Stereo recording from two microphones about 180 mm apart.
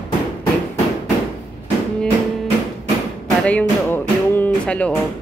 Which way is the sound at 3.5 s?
10° left (ahead or behind).